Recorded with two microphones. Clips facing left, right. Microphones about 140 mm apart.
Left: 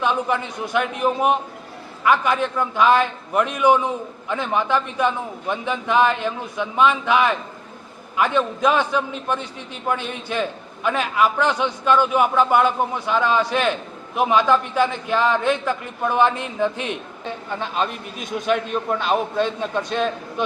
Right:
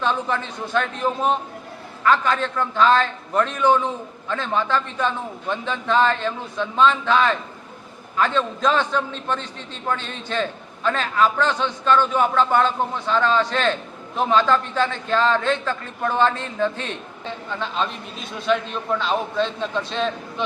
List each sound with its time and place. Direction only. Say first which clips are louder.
0.0 s a man's voice: left 2 dB; 10° left (ahead or behind)
18.2 s a man's voice: left 8 dB; 15° left (ahead or behind)
18.4 s a man's voice: even; 50° left (ahead or behind)
19.0 s a man's voice: left 2 dB; 15° left (ahead or behind)